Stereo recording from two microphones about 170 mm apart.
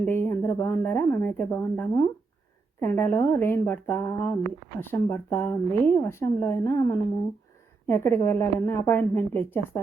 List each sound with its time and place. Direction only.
0.0 s speech: 15° left (ahead or behind)